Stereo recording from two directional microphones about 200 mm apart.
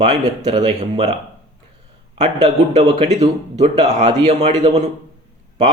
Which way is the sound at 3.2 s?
30° right (ahead or behind).